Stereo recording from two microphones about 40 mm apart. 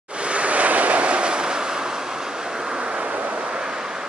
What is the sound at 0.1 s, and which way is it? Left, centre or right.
Waves, right.